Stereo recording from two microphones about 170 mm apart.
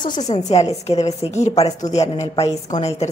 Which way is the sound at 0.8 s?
40° left (ahead or behind).